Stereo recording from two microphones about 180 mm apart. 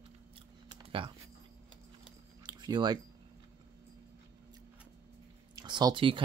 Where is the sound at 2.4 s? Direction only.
25° right (ahead or behind).